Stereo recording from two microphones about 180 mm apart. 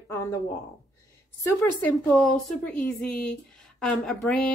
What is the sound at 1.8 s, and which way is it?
A woman's voice, 5° left (ahead or behind).